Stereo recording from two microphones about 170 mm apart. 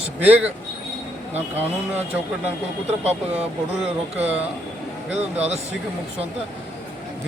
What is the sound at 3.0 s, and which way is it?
Speech, 35° right (ahead or behind).